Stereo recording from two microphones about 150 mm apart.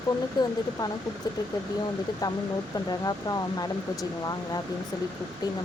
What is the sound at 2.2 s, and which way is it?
Speech, 25° left (ahead or behind).